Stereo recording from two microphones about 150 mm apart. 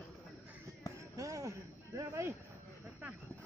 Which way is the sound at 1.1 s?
20° right (ahead or behind).